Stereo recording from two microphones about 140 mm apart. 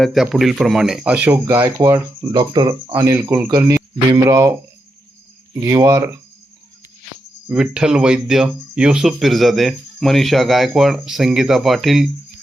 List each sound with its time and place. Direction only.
0.0 s speech: centre (ahead or behind); by 2.0 s 15° right (ahead or behind)
2.3 s speech: 35° right (ahead or behind)
5.6 s speech: 20° right (ahead or behind)
7.4 s speech: 5° right (ahead or behind)